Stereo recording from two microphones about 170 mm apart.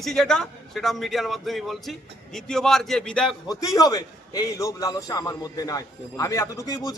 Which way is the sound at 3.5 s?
20° left (ahead or behind).